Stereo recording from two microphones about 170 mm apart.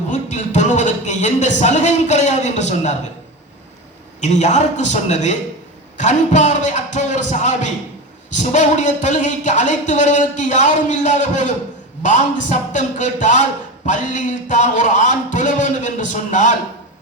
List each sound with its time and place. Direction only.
0.1 s speech: 45° left (ahead or behind)
4.2 s speech: 45° left (ahead or behind)